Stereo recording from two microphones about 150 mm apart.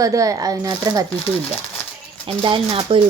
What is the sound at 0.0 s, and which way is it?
Speech, 25° right (ahead or behind).